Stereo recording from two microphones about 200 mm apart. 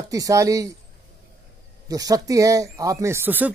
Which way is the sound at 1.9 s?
20° right (ahead or behind).